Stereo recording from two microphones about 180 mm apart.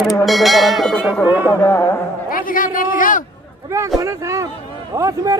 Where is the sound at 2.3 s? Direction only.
50° left (ahead or behind).